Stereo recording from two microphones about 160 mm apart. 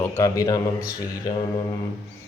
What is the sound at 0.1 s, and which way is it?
Speech, 20° left (ahead or behind).